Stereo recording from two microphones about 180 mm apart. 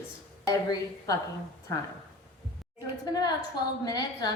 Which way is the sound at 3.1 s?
20° left (ahead or behind).